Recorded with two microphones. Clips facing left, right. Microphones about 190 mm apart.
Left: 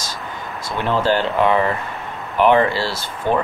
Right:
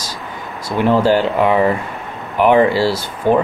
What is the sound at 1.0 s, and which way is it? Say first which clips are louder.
Speech: right 3 dB; 10° right (ahead or behind).